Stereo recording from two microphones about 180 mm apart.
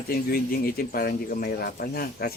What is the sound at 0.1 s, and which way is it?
Speech, 55° left (ahead or behind).